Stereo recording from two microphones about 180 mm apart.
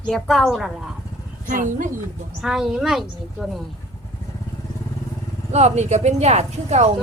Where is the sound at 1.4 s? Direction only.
50° right (ahead or behind).